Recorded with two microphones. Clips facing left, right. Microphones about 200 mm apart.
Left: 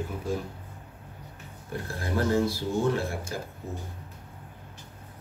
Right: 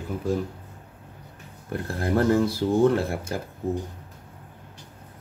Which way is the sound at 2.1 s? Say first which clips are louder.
Right 4 dB; 55° right (ahead or behind).